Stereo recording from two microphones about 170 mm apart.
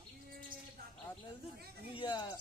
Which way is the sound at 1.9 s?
30° left (ahead or behind).